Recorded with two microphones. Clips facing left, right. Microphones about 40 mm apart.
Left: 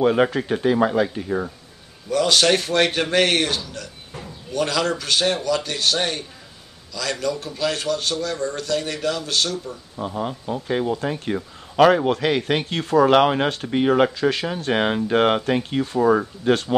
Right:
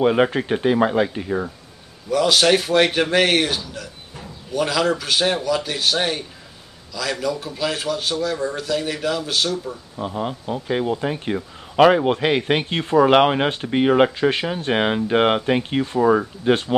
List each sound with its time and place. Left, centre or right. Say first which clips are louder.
0.0 s a man's voice: right 1 dB; centre
2.0 s a man's voice: right 1 dB; centre; by 16.0 s right
16.0 s a man's voice: right 1 dB; centre